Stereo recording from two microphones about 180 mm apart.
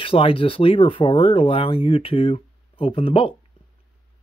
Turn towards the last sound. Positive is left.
turn(degrees=30)  # may be behind; listen again after turning